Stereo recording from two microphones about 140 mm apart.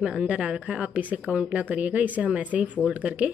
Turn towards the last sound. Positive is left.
turn(degrees=-10)  # may be behind; listen again after turning